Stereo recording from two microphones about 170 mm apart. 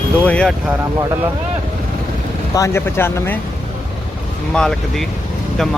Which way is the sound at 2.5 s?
15° left (ahead or behind).